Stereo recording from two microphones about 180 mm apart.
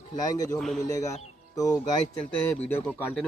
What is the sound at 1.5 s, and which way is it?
Speech, 20° left (ahead or behind).